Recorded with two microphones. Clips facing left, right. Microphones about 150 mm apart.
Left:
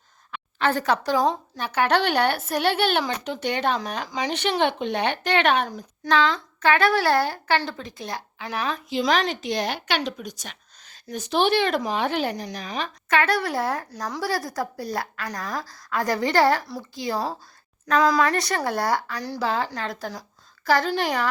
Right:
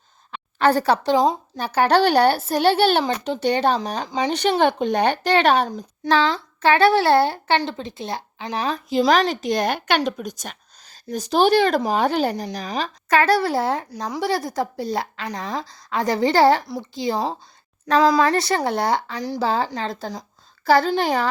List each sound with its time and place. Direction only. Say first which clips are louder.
0.6 s a child's voice: right 5 dB; 35° right (ahead or behind)
1.1 s a woman's voice: right 4 dB; 15° right (ahead or behind)
1.5 s a child's voice: right 6 dB; 35° right (ahead or behind)